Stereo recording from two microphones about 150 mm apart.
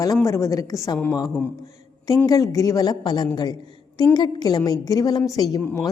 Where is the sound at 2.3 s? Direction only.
25° left (ahead or behind).